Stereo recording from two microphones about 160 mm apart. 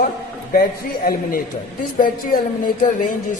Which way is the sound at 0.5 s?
65° left (ahead or behind).